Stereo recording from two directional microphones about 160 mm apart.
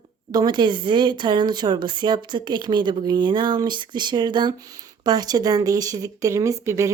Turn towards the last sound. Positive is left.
turn(degrees=-20)  # may be behind; listen again after turning